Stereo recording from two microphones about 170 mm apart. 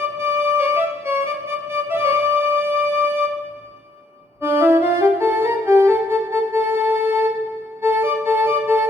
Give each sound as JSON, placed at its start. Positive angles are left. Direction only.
{"t": 0.2, "sound": "music", "side_deg": -15}
{"t": 4.4, "sound": "music", "side_deg": -15}